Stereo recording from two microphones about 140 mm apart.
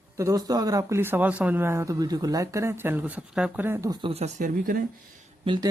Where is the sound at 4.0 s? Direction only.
45° right (ahead or behind); by 4.8 s 85° right.